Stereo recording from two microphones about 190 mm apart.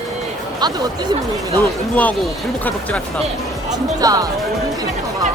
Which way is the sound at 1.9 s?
10° left (ahead or behind).